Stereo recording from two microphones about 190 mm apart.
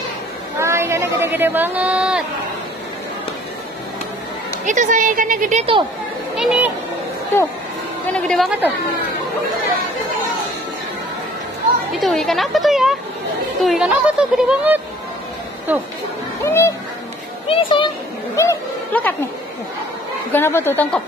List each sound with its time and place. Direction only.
0.6 s speech: 15° right (ahead or behind)
4.6 s a woman's voice: 40° right (ahead or behind)
6.3 s a sound: 5° right (ahead or behind)
8.1 s a woman's voice: centre (ahead or behind)
11.9 s speech: centre (ahead or behind)
16.4 s speech: 15° left (ahead or behind)
17.5 s speech: 25° left (ahead or behind)
18.3 s a sound: 15° left (ahead or behind)
20.3 s speech: 10° left (ahead or behind)